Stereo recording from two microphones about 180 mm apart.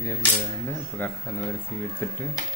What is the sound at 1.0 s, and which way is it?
Speech, 10° left (ahead or behind).